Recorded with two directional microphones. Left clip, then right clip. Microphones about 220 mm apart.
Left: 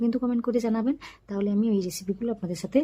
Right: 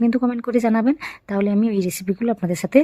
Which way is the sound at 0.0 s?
30° right (ahead or behind).